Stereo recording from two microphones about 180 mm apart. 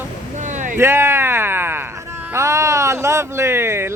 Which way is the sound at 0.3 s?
40° right (ahead or behind).